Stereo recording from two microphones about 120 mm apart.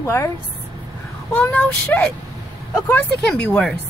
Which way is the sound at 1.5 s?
10° left (ahead or behind).